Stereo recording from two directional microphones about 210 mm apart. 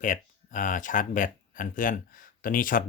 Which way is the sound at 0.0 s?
40° left (ahead or behind).